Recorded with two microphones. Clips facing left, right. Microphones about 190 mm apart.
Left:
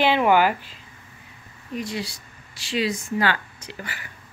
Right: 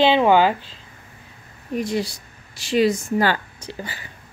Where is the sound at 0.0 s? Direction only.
25° right (ahead or behind).